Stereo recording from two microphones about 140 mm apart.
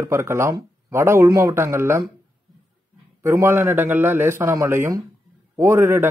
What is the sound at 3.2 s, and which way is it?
A man's voice, 20° right (ahead or behind).